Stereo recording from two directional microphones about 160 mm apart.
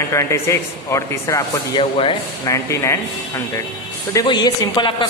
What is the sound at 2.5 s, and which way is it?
A man's voice, 15° left (ahead or behind).